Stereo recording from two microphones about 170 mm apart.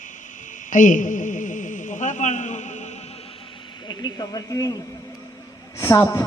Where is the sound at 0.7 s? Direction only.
50° left (ahead or behind).